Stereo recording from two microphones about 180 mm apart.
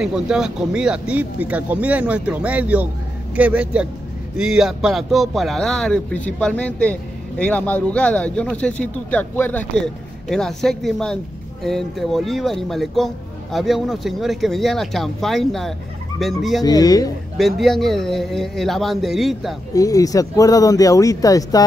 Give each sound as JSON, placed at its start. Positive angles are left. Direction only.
{"t": 0.0, "sound": "speech", "side_deg": -5}
{"t": 16.6, "sound": "speech", "side_deg": 20}
{"t": 17.4, "sound": "speech", "side_deg": 0}
{"t": 19.7, "sound": "speech", "side_deg": 20}